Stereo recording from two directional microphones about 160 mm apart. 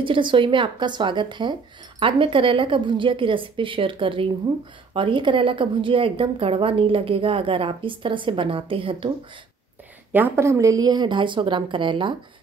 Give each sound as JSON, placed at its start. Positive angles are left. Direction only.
{"t": 0.0, "sound": "speech", "side_deg": -30}
{"t": 10.1, "sound": "a woman's voice", "side_deg": -15}